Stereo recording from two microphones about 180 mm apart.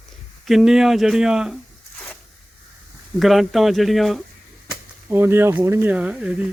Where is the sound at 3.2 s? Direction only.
Centre (ahead or behind).